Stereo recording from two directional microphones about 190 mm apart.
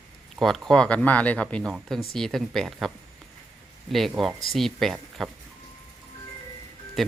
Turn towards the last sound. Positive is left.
turn(degrees=0)  # may be behind; listen again after turning